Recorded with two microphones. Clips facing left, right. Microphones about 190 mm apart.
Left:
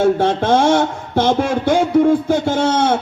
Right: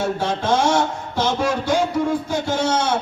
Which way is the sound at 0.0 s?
55° left (ahead or behind).